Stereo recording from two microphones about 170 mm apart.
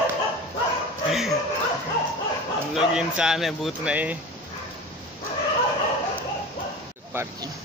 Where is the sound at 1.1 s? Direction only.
Centre (ahead or behind).